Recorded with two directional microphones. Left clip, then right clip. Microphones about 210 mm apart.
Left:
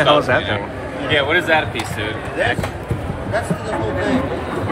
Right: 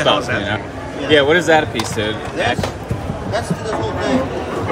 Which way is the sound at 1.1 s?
55° right (ahead or behind).